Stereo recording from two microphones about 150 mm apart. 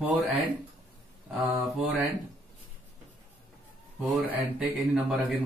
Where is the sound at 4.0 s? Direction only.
10° right (ahead or behind).